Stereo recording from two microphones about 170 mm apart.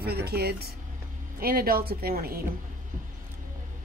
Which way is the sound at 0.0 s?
70° right (ahead or behind).